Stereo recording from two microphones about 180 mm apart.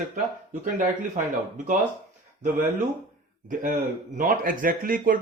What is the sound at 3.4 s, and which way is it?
Speech, 45° right (ahead or behind).